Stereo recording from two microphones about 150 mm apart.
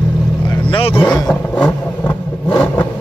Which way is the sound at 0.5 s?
35° left (ahead or behind).